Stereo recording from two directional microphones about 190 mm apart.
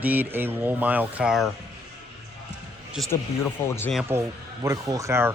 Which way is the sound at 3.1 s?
15° left (ahead or behind).